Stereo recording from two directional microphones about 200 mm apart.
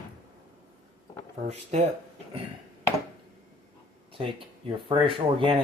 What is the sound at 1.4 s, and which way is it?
Speech, 35° right (ahead or behind).